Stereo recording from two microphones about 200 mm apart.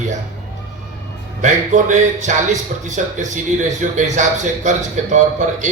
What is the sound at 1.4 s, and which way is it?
A man's voice, 40° right (ahead or behind).